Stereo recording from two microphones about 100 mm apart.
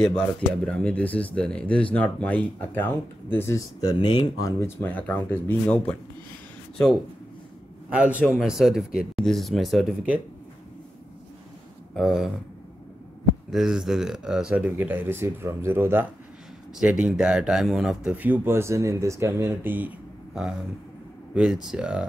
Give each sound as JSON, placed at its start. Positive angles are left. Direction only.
{"t": 0.0, "sound": "speech", "side_deg": 10}
{"t": 3.9, "sound": "speech", "side_deg": 50}
{"t": 4.6, "sound": "speech", "side_deg": 20}
{"t": 7.9, "sound": "speech", "side_deg": -15}
{"t": 8.4, "sound": "speech", "side_deg": -5}
{"t": 11.9, "sound": "speech", "side_deg": 0}
{"t": 13.5, "sound": "speech", "side_deg": -5}
{"t": 17.0, "sound": "speech", "side_deg": -10}
{"t": 21.4, "sound": "speech", "side_deg": -10}